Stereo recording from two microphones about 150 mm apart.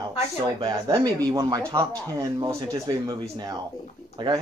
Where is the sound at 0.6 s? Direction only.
25° right (ahead or behind).